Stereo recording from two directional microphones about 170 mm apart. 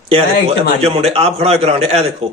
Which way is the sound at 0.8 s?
35° right (ahead or behind).